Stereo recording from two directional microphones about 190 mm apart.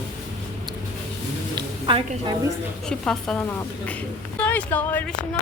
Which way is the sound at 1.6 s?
25° right (ahead or behind).